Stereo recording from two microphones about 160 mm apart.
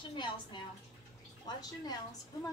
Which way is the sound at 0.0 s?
30° left (ahead or behind).